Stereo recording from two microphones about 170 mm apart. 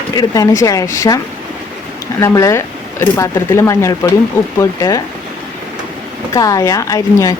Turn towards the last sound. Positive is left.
turn(degrees=20)  # may be behind; listen again after turning